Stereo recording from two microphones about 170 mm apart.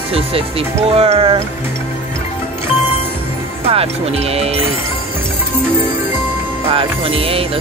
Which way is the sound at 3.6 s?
35° right (ahead or behind).